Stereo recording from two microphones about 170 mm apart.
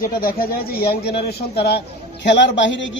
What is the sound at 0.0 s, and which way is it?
Speech, 60° left (ahead or behind).